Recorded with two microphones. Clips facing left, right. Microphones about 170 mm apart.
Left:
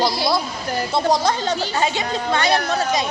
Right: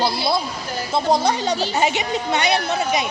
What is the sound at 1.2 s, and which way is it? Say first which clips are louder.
A woman's voice: right 1 dB; 15° right (ahead or behind).